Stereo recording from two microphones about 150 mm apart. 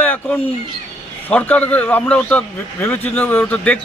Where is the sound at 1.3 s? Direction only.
10° left (ahead or behind).